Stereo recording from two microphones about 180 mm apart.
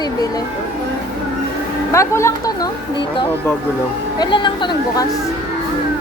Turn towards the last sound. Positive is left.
turn(degrees=25)  # may be behind; listen again after turning